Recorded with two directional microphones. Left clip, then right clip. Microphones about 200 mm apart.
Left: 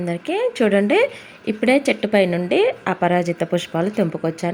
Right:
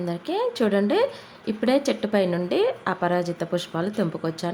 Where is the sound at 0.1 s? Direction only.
10° left (ahead or behind).